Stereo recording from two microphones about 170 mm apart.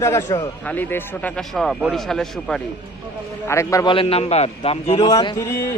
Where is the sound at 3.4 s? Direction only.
15° left (ahead or behind).